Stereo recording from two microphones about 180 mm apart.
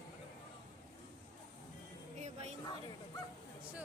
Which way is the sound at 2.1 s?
40° right (ahead or behind).